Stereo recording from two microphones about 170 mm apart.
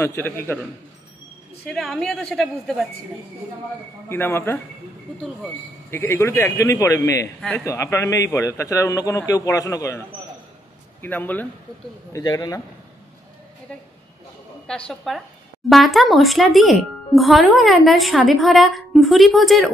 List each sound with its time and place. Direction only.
0.0 s a man's voice: 15° left (ahead or behind)
1.7 s speech: 5° left (ahead or behind)
4.1 s a man's voice: 15° left (ahead or behind)
5.9 s a man's voice: 15° left (ahead or behind)
12.1 s a man's voice: 20° left (ahead or behind)
14.7 s speech: centre (ahead or behind)